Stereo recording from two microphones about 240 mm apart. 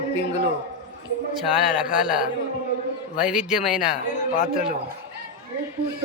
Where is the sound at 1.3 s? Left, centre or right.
Centre.